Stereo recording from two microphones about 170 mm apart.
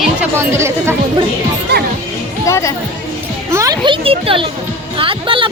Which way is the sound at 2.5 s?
20° left (ahead or behind).